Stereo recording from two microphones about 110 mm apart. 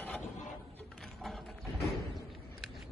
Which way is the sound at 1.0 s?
Centre (ahead or behind).